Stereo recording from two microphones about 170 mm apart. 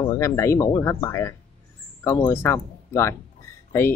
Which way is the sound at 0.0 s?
15° left (ahead or behind).